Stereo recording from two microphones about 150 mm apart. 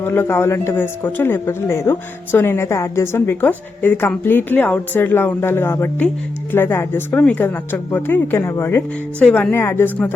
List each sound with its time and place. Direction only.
0.0 s speech: 15° left (ahead or behind)